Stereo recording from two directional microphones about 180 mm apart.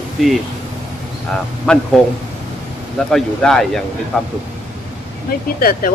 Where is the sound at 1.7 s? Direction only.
5° left (ahead or behind).